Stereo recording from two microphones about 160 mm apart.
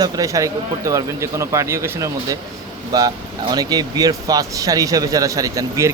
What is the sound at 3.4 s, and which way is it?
A man's voice, 25° right (ahead or behind).